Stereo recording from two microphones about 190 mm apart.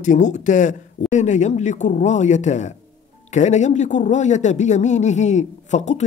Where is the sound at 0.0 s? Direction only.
40° left (ahead or behind).